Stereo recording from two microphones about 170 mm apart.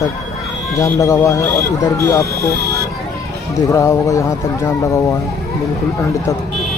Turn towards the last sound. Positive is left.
turn(degrees=20)  # may be behind; listen again after turning